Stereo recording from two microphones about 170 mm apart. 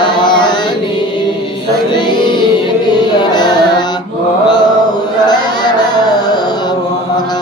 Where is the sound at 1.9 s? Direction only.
25° left (ahead or behind).